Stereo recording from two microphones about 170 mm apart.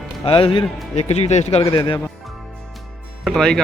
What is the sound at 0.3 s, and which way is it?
A man's voice, 30° left (ahead or behind).